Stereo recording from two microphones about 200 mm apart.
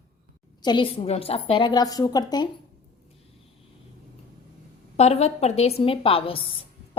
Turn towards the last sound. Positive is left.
turn(degrees=25)  # may be behind; listen again after turning